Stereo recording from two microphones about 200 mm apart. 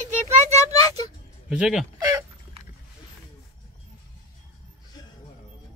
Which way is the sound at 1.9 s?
20° right (ahead or behind).